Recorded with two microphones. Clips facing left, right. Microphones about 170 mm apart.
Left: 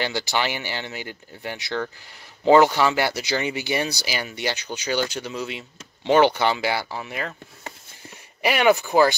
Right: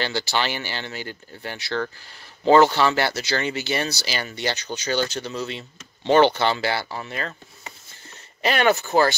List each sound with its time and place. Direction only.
0.0 s speech: 15° left (ahead or behind)